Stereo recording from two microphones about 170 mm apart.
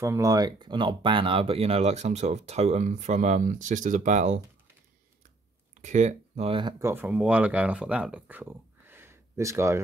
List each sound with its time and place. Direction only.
0.0 s speech: 15° right (ahead or behind); by 4.4 s 45° right (ahead or behind)
5.8 s speech: 45° right (ahead or behind)
6.8 s speech: 15° right (ahead or behind)